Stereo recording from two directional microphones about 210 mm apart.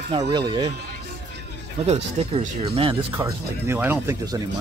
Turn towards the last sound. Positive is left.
turn(degrees=-10)  # may be behind; listen again after turning